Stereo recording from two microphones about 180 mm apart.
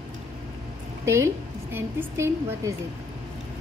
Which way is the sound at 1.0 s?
15° right (ahead or behind).